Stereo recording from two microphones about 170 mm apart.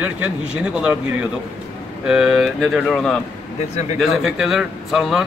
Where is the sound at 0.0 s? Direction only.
5° right (ahead or behind).